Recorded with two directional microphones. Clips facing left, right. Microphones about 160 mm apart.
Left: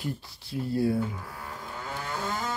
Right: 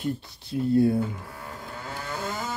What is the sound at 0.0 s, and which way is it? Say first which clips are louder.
Speech: right 5 dB; 20° right (ahead or behind).